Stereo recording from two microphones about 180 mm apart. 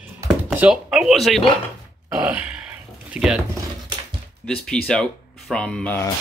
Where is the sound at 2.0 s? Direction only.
10° right (ahead or behind).